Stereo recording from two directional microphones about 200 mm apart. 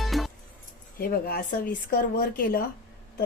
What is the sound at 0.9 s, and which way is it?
A woman's voice, 50° left (ahead or behind).